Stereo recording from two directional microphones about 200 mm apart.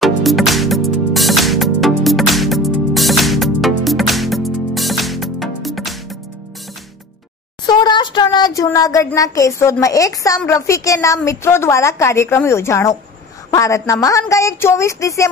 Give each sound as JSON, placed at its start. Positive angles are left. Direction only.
{"t": 0.0, "sound": "music", "side_deg": 0}
{"t": 7.6, "sound": "speech", "side_deg": 20}